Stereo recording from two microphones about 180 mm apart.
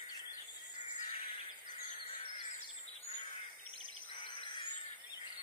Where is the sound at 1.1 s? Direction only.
30° left (ahead or behind).